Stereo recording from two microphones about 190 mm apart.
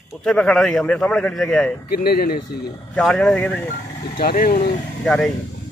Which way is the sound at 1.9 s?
50° left (ahead or behind).